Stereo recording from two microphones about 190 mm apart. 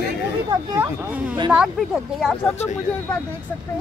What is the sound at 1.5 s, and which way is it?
Speech, centre (ahead or behind).